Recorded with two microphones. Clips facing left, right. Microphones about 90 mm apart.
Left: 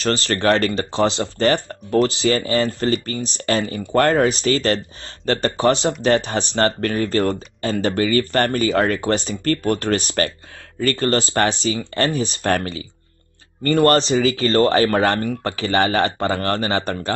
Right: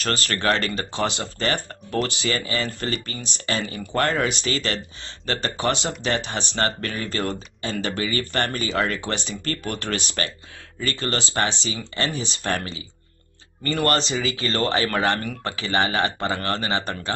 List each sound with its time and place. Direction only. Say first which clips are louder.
0.0 s speech: left 5 dB; 30° left (ahead or behind)